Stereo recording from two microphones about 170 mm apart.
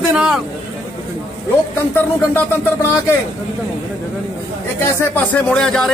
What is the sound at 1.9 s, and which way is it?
Speech, 10° left (ahead or behind).